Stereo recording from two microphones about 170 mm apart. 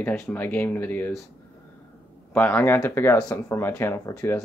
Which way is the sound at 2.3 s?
10° left (ahead or behind).